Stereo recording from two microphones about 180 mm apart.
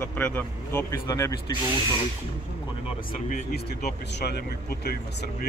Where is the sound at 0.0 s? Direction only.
10° left (ahead or behind).